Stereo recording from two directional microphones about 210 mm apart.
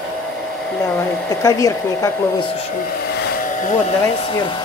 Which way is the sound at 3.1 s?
50° left (ahead or behind).